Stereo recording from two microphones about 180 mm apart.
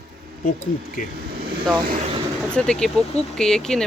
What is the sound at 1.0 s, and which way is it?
Speech, 45° left (ahead or behind).